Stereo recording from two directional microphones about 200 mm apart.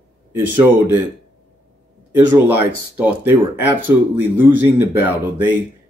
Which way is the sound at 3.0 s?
10° right (ahead or behind).